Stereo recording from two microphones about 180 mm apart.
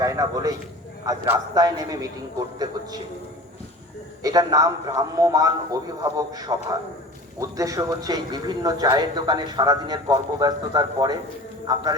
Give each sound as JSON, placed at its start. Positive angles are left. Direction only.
{"t": 0.0, "sound": "a man's voice", "side_deg": -20}
{"t": 4.2, "sound": "a man's voice", "side_deg": -20}